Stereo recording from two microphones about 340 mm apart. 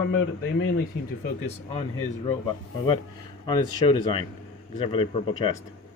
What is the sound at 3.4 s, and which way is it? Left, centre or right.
Speech, centre.